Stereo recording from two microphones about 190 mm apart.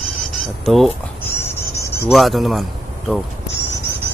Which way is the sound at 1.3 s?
15° left (ahead or behind).